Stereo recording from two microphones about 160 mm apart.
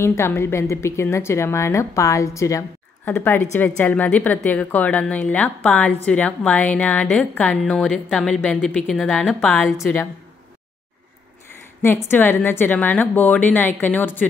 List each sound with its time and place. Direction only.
0.0 s a woman's voice: 15° left (ahead or behind)
9.8 s a woman's voice: 15° left (ahead or behind)
11.8 s a woman's voice: 15° left (ahead or behind)